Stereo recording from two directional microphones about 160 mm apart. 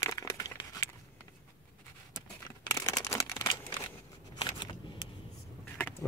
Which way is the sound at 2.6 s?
20° left (ahead or behind).